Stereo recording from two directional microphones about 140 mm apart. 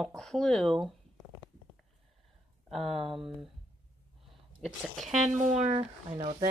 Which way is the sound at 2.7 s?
Centre (ahead or behind).